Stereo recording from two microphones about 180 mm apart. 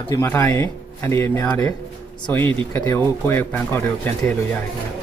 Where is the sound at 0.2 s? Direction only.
15° left (ahead or behind).